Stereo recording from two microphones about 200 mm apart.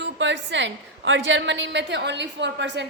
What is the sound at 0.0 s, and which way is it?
A woman's voice, 65° right (ahead or behind).